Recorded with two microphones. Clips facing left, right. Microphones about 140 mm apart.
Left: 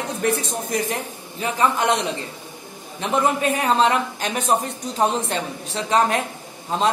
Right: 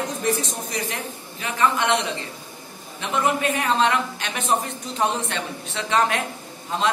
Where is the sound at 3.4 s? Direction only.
40° left (ahead or behind).